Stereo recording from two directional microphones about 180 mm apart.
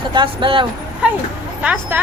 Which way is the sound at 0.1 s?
25° right (ahead or behind).